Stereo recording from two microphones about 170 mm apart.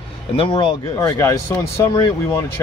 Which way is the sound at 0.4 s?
30° left (ahead or behind).